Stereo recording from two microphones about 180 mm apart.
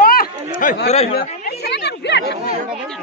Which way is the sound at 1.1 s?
60° left (ahead or behind).